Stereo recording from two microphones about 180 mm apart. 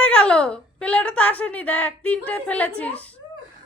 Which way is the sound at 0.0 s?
5° left (ahead or behind).